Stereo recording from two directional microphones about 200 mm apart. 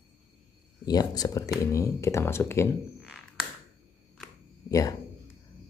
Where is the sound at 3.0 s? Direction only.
Centre (ahead or behind).